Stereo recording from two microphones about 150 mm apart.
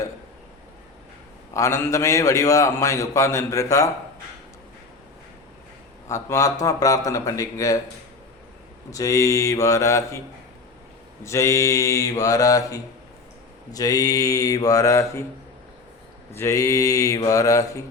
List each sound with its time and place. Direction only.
1.5 s a man's voice: 20° left (ahead or behind)
6.1 s a man's voice: 20° left (ahead or behind)
8.9 s a man's voice: 20° left (ahead or behind)
11.2 s a man's voice: 20° left (ahead or behind)
16.3 s a man's voice: 20° left (ahead or behind)